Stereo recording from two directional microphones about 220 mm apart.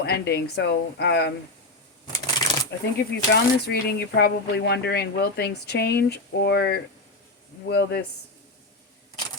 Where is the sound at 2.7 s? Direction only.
50° left (ahead or behind).